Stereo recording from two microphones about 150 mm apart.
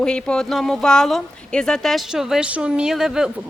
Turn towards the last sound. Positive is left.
turn(degrees=-5)  # may be behind; listen again after turning